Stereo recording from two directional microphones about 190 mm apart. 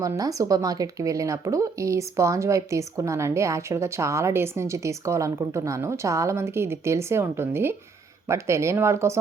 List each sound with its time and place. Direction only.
0.0 s speech: 15° right (ahead or behind)